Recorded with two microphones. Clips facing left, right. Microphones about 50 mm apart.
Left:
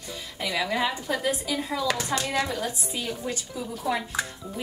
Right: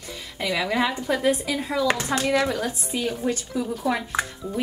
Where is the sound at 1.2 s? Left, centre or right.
Right.